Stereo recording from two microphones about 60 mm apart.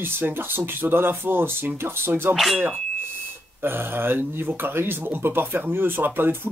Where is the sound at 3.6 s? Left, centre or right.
Right.